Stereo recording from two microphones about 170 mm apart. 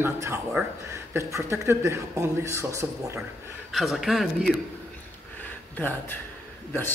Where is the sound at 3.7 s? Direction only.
Centre (ahead or behind).